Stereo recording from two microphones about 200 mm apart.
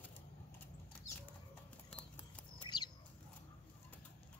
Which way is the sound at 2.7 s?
20° left (ahead or behind).